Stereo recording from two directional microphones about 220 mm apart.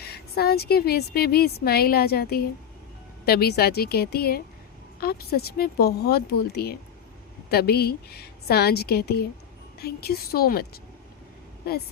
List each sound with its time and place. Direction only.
0.0 s a woman's voice: 45° left (ahead or behind)